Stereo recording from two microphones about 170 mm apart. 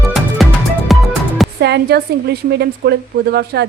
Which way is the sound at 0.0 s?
Centre (ahead or behind).